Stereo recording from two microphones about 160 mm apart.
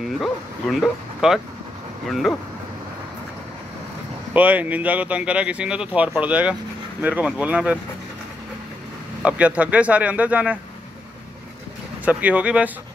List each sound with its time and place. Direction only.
0.2 s speech: centre (ahead or behind)
4.3 s speech: 10° right (ahead or behind)
9.2 s speech: 10° right (ahead or behind)
12.0 s speech: 10° right (ahead or behind)